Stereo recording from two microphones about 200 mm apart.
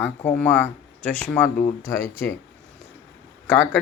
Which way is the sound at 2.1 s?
10° left (ahead or behind).